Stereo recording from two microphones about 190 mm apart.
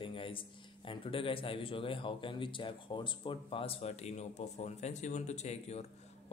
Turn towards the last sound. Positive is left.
turn(degrees=35)  # may be behind; listen again after turning